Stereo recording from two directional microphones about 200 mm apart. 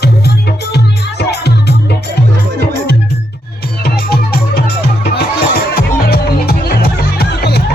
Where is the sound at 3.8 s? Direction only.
50° left (ahead or behind).